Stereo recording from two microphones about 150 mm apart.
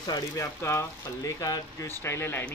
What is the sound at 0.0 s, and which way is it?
Speech, 25° left (ahead or behind).